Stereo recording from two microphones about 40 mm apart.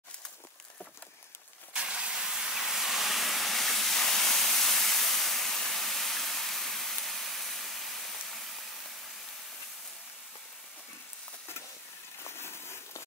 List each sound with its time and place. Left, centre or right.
1.7 s vehicle: right
2.1 s steam: centre
12.2 s a sound: left